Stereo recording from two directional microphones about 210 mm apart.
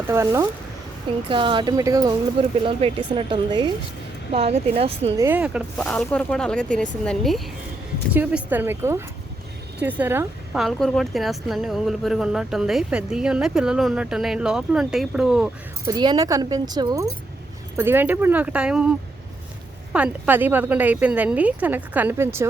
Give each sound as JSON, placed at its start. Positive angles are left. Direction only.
{"t": 0.1, "sound": "speech", "side_deg": -15}
{"t": 5.1, "sound": "speech", "side_deg": -10}
{"t": 15.9, "sound": "speech", "side_deg": -20}